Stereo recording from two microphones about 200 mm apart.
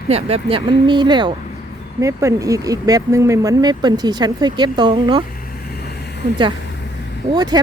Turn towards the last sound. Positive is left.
turn(degrees=-20)  # may be behind; listen again after turning